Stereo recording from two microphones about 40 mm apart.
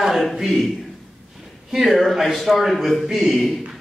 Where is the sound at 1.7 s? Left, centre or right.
Centre.